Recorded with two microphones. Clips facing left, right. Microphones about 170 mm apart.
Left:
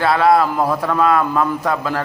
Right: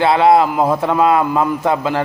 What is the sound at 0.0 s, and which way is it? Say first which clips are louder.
A man's voice: right 3 dB; 25° right (ahead or behind).